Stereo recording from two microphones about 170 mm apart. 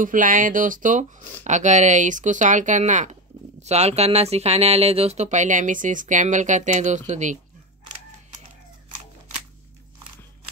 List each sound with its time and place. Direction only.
0.0 s speech: 50° right (ahead or behind)